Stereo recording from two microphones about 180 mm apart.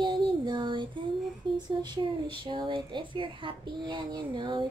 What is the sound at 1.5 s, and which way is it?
Speech, 25° right (ahead or behind).